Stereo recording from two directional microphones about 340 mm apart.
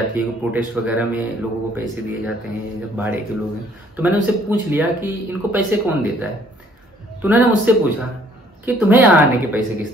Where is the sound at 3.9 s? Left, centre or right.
Centre.